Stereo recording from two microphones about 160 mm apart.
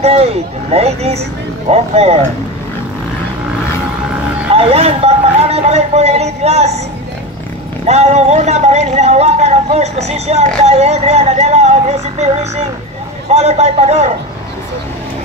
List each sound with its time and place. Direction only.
0.0 s speech: 40° right (ahead or behind)
4.6 s a sound: 40° right (ahead or behind)
7.8 s speech: 45° right (ahead or behind)
13.3 s speech: 40° right (ahead or behind)